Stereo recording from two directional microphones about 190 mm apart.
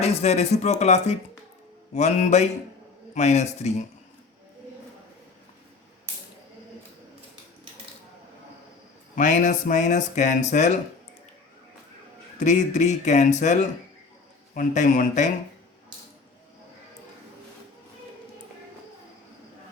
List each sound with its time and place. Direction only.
0.0 s speech: 35° left (ahead or behind)
9.1 s speech: 40° left (ahead or behind)
12.4 s speech: 40° left (ahead or behind)